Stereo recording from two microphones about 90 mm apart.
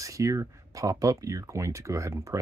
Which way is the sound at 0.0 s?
35° right (ahead or behind).